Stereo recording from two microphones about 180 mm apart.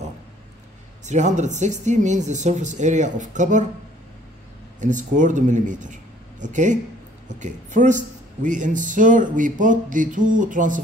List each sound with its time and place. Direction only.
1.0 s speech: 40° right (ahead or behind)
4.7 s speech: 45° right (ahead or behind)